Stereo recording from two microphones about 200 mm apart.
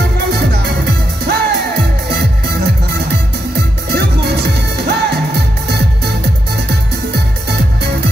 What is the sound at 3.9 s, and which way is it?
Music, 55° right (ahead or behind).